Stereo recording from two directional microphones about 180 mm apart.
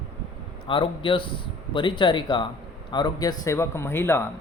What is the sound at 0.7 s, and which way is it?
A man's voice, 30° left (ahead or behind).